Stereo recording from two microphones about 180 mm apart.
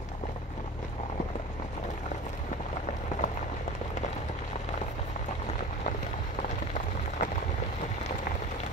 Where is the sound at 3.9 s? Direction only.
40° left (ahead or behind).